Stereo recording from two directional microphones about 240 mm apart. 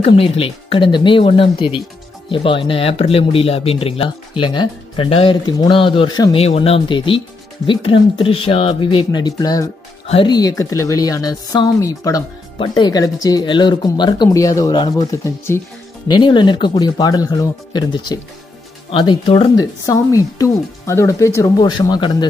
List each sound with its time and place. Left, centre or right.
0.0 s speech: left